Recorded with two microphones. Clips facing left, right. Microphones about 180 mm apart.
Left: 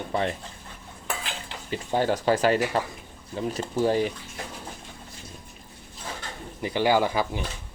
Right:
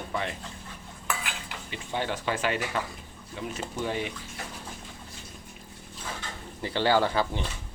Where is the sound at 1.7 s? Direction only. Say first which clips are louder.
Left 7 dB; 40° left (ahead or behind).